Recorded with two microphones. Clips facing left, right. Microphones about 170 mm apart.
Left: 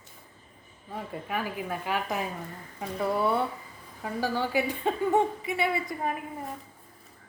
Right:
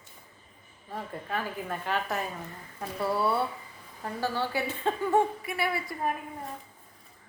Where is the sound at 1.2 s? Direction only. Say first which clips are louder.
Left 2 dB; 10° left (ahead or behind).